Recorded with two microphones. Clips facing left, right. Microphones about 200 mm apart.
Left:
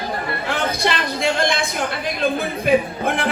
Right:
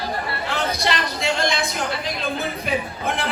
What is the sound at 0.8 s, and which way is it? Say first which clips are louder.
Speech: left 3 dB; 55° left (ahead or behind).